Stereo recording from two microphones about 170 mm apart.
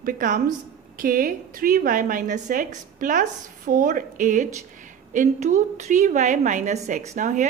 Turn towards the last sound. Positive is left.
turn(degrees=-45)  # may be behind; listen again after turning